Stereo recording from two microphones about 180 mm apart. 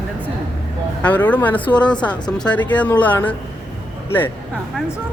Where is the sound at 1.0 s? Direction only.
10° left (ahead or behind).